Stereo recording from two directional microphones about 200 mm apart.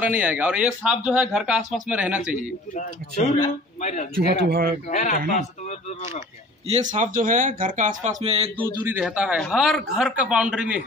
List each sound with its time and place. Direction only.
0.0 s speech: 5° right (ahead or behind)
3.8 s speech: 35° left (ahead or behind)
4.5 s speech: 50° right (ahead or behind)
4.8 s speech: 35° left (ahead or behind)
6.7 s speech: 35° right (ahead or behind)
8.8 s speech: 5° right (ahead or behind)